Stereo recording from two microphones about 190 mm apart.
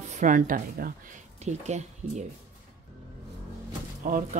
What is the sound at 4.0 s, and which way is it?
Speech, 45° right (ahead or behind).